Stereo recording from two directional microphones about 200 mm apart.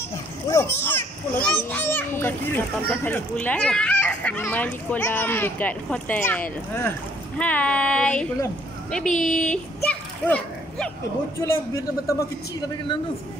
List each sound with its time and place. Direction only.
0.5 s a child's voice: 15° left (ahead or behind)